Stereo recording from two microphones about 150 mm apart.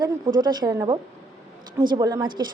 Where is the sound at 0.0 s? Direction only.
25° right (ahead or behind).